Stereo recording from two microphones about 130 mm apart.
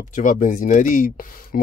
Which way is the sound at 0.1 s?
90° left.